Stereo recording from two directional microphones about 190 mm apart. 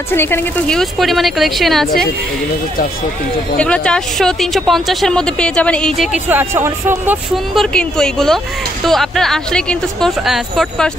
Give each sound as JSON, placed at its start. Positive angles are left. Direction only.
{"t": 0.1, "sound": "speech", "side_deg": 10}
{"t": 3.5, "sound": "speech", "side_deg": 5}
{"t": 6.2, "sound": "speech", "side_deg": -10}
{"t": 7.5, "sound": "speech", "side_deg": 5}